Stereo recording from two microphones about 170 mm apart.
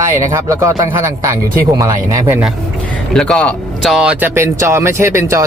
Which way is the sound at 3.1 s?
5° left (ahead or behind).